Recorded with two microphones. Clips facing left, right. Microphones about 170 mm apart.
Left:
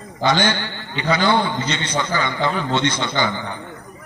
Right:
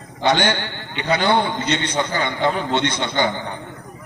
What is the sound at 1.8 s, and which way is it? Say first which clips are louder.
A man's voice: even; 55° right (ahead or behind).